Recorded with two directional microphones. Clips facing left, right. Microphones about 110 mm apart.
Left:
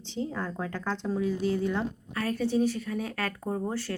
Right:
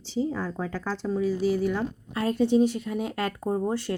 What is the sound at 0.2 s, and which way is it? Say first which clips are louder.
Speech: right 4 dB; 5° right (ahead or behind).